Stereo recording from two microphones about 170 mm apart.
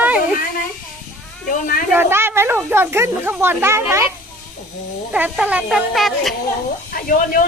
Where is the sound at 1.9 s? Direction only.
15° right (ahead or behind).